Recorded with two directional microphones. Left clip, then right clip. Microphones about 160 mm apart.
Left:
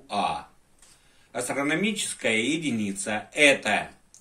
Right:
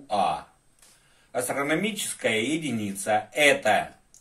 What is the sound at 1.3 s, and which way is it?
Speech, 45° right (ahead or behind).